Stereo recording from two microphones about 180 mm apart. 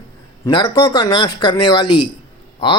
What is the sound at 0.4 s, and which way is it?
Speech, 25° left (ahead or behind).